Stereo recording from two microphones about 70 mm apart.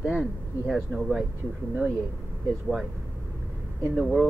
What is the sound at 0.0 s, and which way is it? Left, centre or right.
Speech, centre.